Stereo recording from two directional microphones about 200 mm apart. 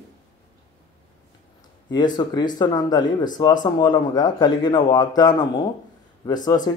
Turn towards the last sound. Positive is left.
turn(degrees=20)  # may be behind; listen again after turning